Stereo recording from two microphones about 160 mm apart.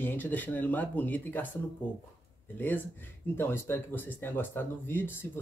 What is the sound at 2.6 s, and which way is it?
Speech, 10° left (ahead or behind).